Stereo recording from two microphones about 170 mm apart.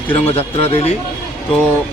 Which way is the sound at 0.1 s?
35° left (ahead or behind).